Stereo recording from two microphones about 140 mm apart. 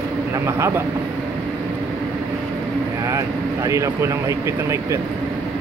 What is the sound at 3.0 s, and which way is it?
Speech, 20° right (ahead or behind).